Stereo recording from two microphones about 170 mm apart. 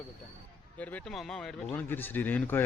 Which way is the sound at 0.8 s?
10° left (ahead or behind).